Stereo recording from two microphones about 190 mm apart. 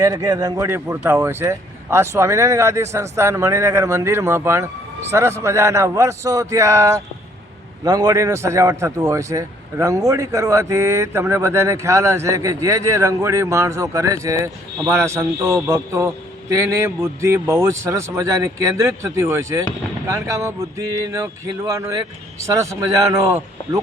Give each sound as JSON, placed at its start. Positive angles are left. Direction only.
{"t": 0.0, "sound": "speech", "side_deg": -15}